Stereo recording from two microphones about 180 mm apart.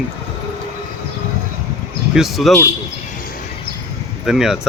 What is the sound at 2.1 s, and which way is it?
Speech, centre (ahead or behind).